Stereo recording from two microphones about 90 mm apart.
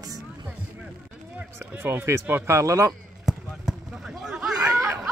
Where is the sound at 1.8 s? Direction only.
25° right (ahead or behind).